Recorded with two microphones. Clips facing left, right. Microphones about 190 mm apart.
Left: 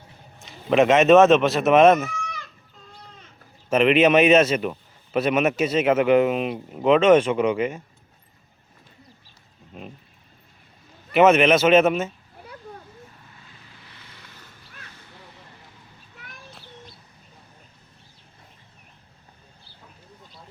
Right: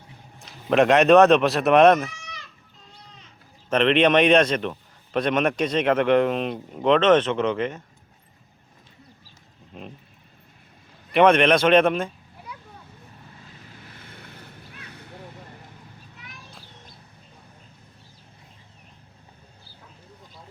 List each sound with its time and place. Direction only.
0.3 s speech: centre (ahead or behind)
3.7 s a man's voice: 5° left (ahead or behind)
9.7 s speech: centre (ahead or behind)
11.1 s speech: 5° left (ahead or behind)
13.9 s boat: 50° right (ahead or behind)